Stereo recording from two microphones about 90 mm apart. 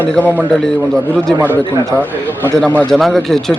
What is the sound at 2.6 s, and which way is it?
Speech, 5° left (ahead or behind).